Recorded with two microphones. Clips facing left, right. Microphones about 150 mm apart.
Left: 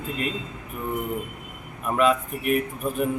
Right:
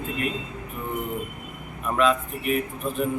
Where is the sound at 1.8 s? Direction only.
5° left (ahead or behind).